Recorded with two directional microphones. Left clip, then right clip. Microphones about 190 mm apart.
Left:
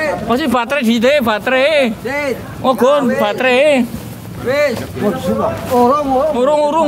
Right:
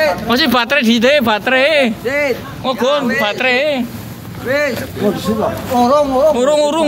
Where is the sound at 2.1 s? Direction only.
60° left (ahead or behind).